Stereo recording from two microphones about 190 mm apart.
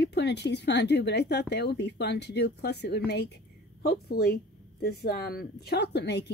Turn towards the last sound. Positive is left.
turn(degrees=60)  # may be behind; listen again after turning